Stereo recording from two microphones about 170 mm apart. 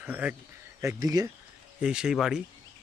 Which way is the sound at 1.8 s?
5° right (ahead or behind).